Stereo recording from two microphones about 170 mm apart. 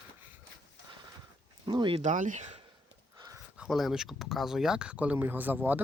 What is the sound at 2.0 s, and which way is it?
Speech, 45° right (ahead or behind).